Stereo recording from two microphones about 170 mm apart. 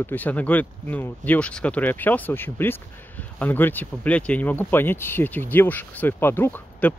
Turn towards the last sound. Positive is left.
turn(degrees=10)  # may be behind; listen again after turning